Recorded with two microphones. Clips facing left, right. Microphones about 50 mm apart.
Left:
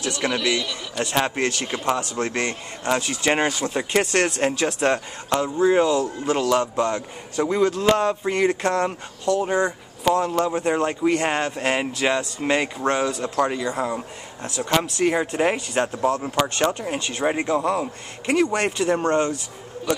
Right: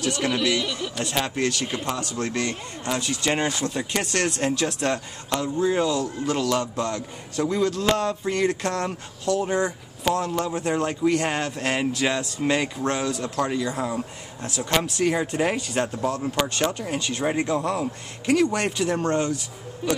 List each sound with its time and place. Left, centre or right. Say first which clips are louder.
0.1 s speech: left 2 dB; centre
1.1 s a man's voice: left 3 dB; left
14.5 s a man's voice: left 2 dB; centre; by 16.3 s left
16.5 s a man's voice: left 2 dB; centre